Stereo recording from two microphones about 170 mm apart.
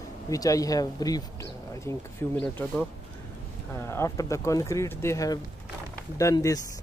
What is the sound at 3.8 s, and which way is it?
Speech, 15° left (ahead or behind).